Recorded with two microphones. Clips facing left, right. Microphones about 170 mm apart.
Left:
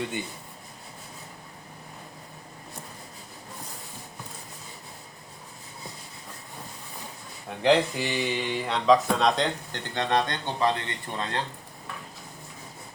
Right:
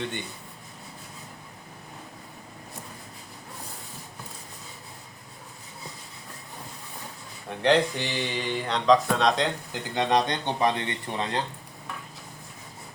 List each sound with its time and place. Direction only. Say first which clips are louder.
7.5 s speech: even; centre (ahead or behind)
9.9 s speech: right 2 dB; 15° right (ahead or behind)